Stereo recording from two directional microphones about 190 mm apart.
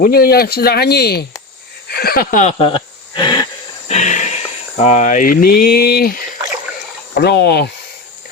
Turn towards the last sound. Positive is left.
turn(degrees=60)  # may be behind; listen again after turning